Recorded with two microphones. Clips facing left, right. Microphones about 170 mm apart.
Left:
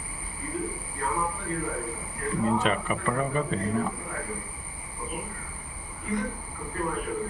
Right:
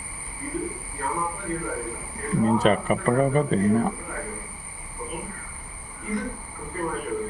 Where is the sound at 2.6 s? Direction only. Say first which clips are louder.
Right 6 dB; 40° right (ahead or behind).